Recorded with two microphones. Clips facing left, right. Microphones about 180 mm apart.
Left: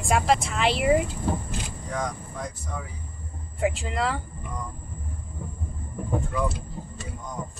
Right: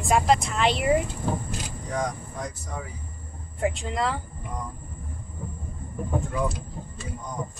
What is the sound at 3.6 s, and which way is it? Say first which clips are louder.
Speech: even; 5° left (ahead or behind).